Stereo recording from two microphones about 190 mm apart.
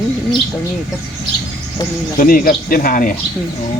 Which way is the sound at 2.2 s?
45° left (ahead or behind).